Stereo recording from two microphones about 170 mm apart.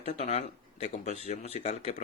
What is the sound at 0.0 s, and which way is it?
Speech, 40° left (ahead or behind).